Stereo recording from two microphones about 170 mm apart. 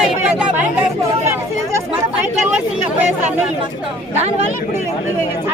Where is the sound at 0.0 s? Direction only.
5° right (ahead or behind).